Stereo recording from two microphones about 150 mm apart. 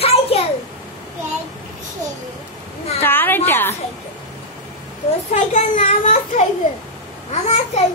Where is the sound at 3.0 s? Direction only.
15° left (ahead or behind).